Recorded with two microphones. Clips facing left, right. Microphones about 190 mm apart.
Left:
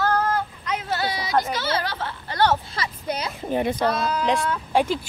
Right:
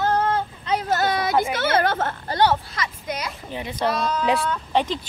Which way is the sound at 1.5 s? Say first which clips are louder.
Right 5 dB; 55° right (ahead or behind).